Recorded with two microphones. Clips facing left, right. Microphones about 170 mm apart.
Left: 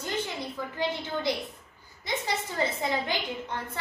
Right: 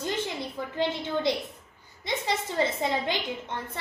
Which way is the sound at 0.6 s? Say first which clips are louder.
Right 1 dB; 30° right (ahead or behind).